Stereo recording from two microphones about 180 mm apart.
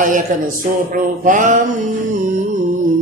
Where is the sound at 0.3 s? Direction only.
45° right (ahead or behind).